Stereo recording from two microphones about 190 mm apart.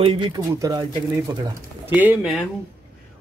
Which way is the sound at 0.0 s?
25° right (ahead or behind).